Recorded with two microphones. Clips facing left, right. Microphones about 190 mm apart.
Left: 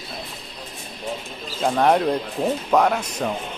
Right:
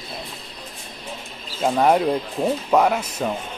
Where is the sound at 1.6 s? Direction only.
5° right (ahead or behind).